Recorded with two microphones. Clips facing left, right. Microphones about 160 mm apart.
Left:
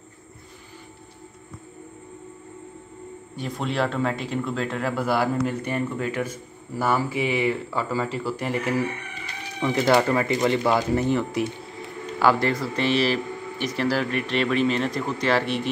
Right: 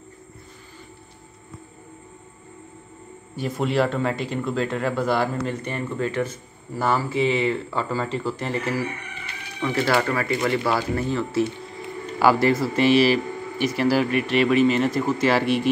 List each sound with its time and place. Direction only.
3.3 s speech: 5° right (ahead or behind); by 11.4 s 15° left (ahead or behind)
12.2 s speech: 10° right (ahead or behind)